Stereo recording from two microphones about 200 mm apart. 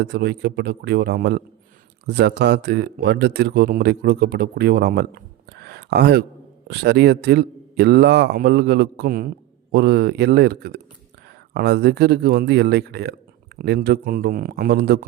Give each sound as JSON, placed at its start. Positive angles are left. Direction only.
{"t": 0.0, "sound": "speech", "side_deg": -55}
{"t": 5.6, "sound": "a sound", "side_deg": -55}
{"t": 6.7, "sound": "speech", "side_deg": -55}